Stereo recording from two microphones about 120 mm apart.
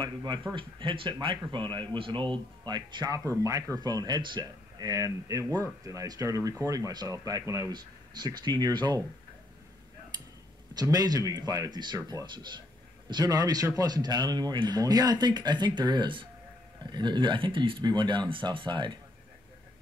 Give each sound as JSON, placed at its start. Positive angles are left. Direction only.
{"t": 0.0, "sound": "speech", "side_deg": -40}
{"t": 10.7, "sound": "speech", "side_deg": -35}